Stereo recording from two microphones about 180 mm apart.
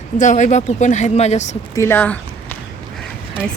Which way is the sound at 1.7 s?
15° left (ahead or behind).